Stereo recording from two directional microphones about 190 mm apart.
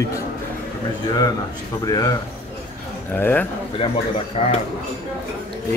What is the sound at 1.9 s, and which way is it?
Speech, 20° left (ahead or behind).